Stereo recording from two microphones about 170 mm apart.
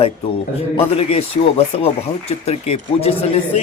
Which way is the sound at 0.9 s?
35° left (ahead or behind).